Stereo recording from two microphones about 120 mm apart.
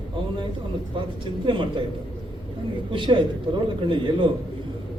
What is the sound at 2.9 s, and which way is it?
A man's voice, 45° right (ahead or behind).